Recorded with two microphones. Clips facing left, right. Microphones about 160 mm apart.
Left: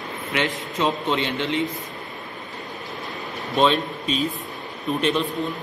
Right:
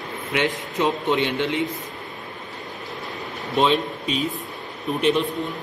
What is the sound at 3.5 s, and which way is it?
A man's voice, 15° right (ahead or behind).